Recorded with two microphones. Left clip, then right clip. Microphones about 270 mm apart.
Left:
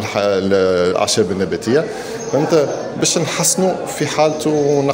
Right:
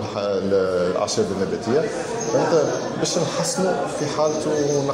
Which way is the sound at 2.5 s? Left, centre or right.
Left.